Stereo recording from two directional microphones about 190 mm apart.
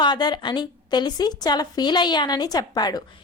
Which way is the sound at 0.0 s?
25° left (ahead or behind).